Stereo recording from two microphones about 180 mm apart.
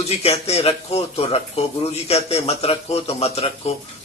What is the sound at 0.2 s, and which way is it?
Speech, 35° left (ahead or behind).